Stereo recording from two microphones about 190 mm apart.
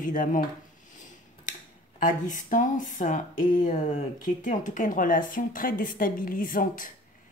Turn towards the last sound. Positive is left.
turn(degrees=45)  # may be behind; listen again after turning